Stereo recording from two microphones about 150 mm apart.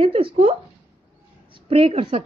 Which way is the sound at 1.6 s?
40° right (ahead or behind).